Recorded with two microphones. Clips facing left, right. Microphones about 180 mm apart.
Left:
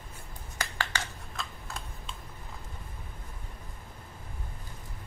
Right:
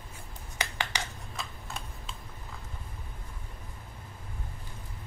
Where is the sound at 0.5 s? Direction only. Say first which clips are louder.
Even; 15° right (ahead or behind).